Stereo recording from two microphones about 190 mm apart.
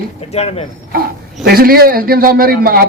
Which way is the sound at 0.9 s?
50° right (ahead or behind).